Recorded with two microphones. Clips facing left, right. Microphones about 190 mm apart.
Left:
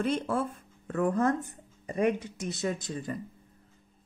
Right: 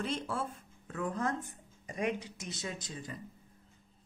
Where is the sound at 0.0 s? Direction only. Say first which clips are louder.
Left 7 dB; 55° left (ahead or behind).